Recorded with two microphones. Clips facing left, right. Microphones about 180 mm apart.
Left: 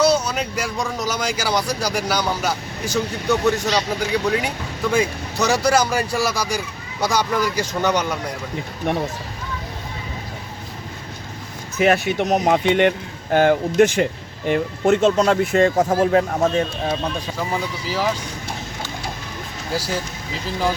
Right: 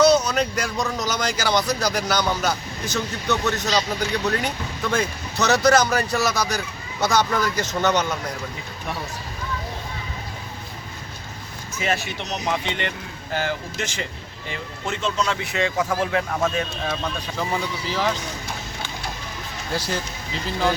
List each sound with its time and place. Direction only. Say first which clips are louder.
0.0 s speech: right 1 dB; 10° left (ahead or behind)
8.9 s speech: left 9 dB; 60° left (ahead or behind)
11.8 s speech: left 9 dB; 55° left (ahead or behind); by 16.9 s 35° left (ahead or behind)
17.8 s speech: left 2 dB; 5° left (ahead or behind)